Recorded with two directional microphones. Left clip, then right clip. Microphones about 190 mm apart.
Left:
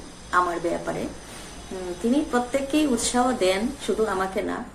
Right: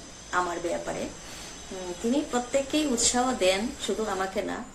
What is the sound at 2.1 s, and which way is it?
Speech, 15° right (ahead or behind).